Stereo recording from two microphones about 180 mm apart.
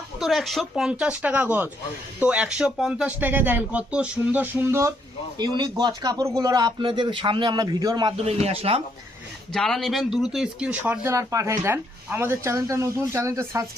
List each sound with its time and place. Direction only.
0.2 s speech: centre (ahead or behind); by 8.1 s 20° right (ahead or behind)
8.2 s speech: 35° right (ahead or behind)
9.5 s speech: 5° left (ahead or behind); by 13.7 s 15° right (ahead or behind)